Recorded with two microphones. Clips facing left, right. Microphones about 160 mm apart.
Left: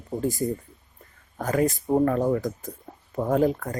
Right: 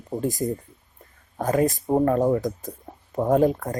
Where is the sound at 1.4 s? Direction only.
25° right (ahead or behind).